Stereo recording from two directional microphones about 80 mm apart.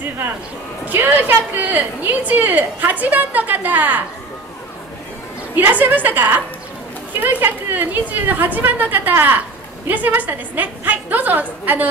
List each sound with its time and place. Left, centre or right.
0.8 s a woman's voice: right
5.6 s a woman's voice: right